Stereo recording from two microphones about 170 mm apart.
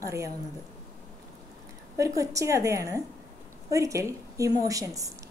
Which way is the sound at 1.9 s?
20° right (ahead or behind).